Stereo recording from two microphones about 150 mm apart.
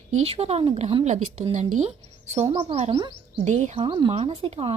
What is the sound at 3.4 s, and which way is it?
Speech, 50° right (ahead or behind).